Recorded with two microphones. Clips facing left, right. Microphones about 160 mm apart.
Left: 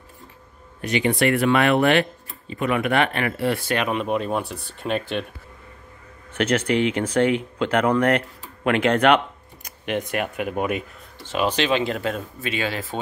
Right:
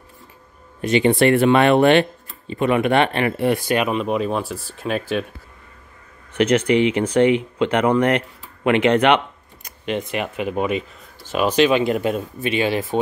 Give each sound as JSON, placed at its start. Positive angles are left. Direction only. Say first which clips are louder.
{"t": 0.7, "sound": "speech", "louder": "right 5 dB", "side_deg": -25}
{"t": 3.9, "sound": "speech", "louder": "right 2 dB", "side_deg": 0}
{"t": 6.3, "sound": "speech", "louder": "right 4 dB", "side_deg": 0}
{"t": 11.2, "sound": "speech", "louder": "right 5 dB", "side_deg": -10}